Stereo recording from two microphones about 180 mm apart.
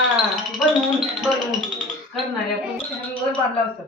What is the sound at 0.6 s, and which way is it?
Music, centre (ahead or behind).